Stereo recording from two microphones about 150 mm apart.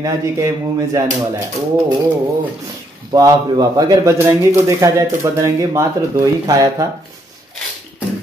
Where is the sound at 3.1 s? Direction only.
25° right (ahead or behind).